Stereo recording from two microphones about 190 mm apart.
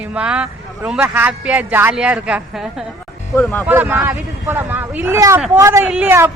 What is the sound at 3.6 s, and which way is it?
Speech, 10° right (ahead or behind).